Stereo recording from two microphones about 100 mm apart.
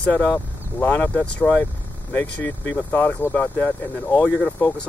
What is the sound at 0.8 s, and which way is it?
Speech, 20° left (ahead or behind).